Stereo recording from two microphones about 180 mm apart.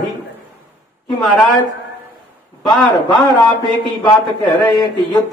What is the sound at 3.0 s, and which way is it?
A man's voice, 25° left (ahead or behind).